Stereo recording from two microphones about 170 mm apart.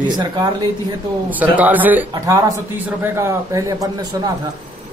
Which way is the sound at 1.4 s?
10° right (ahead or behind).